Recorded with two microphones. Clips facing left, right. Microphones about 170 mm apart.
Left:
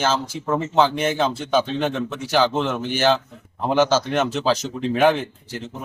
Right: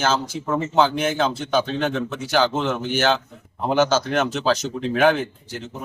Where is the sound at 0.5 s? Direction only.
Centre (ahead or behind).